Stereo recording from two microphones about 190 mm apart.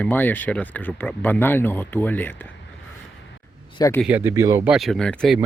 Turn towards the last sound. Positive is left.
turn(degrees=0)  # may be behind; listen again after turning